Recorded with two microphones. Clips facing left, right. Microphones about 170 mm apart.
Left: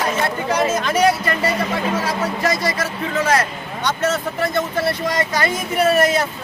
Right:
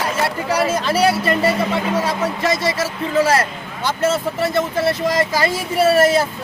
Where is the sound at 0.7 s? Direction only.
30° right (ahead or behind).